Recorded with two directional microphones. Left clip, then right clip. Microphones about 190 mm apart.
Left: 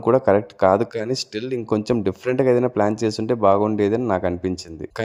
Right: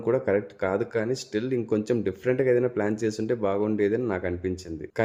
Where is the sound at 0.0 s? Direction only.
35° left (ahead or behind).